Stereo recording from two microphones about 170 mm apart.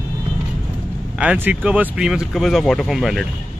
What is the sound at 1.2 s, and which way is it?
Speech, 10° right (ahead or behind).